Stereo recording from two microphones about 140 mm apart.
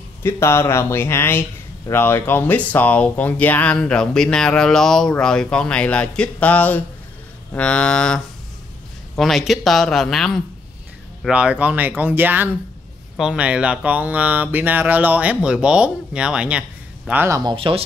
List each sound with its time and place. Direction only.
0.2 s speech: 20° left (ahead or behind); by 10.4 s centre (ahead or behind)
11.2 s speech: 10° right (ahead or behind)
17.4 s speech: 35° right (ahead or behind)